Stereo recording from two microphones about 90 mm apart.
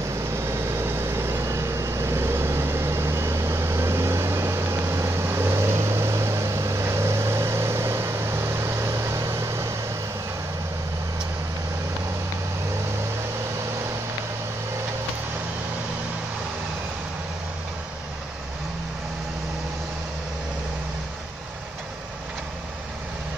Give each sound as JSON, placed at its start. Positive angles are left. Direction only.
{"t": 0.4, "sound": "vehicle", "side_deg": -30}